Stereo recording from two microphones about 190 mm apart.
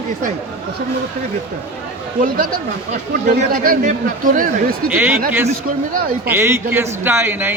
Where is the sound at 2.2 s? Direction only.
45° right (ahead or behind).